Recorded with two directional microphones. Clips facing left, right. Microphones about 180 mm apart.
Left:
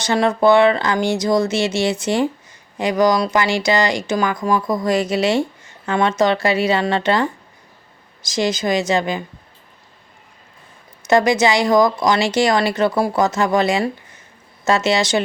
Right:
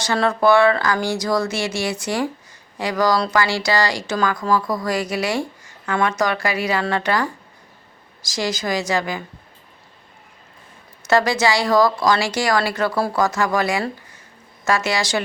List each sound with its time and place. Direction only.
0.0 s speech: 20° left (ahead or behind)
11.0 s a woman's voice: 20° left (ahead or behind)